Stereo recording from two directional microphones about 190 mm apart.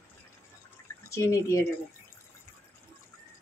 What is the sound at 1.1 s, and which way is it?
Speech, 15° left (ahead or behind).